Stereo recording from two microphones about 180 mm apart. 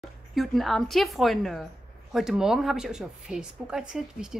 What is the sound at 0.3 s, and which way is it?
A woman's voice, centre (ahead or behind).